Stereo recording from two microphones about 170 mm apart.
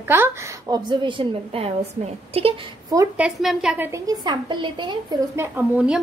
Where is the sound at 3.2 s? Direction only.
5° right (ahead or behind); by 4.9 s 30° right (ahead or behind).